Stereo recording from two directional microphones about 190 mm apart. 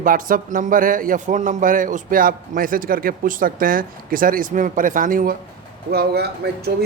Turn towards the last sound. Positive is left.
turn(degrees=-60)  # may be behind; listen again after turning